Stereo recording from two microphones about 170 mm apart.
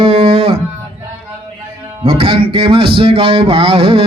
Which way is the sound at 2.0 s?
30° right (ahead or behind).